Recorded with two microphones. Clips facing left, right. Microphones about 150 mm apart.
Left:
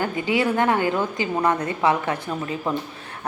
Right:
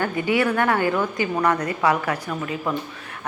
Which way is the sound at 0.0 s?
20° left (ahead or behind).